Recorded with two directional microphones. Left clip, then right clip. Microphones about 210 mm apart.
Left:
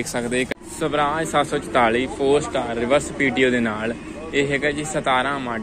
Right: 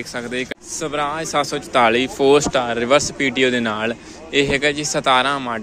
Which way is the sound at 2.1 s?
45° right (ahead or behind).